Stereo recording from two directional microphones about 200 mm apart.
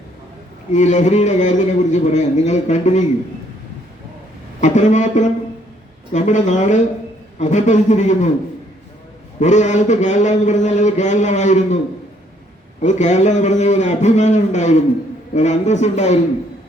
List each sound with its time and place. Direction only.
0.7 s a man's voice: 35° left (ahead or behind)
4.6 s a man's voice: 35° left (ahead or behind)
9.4 s a man's voice: 35° left (ahead or behind)
12.8 s a man's voice: 35° left (ahead or behind)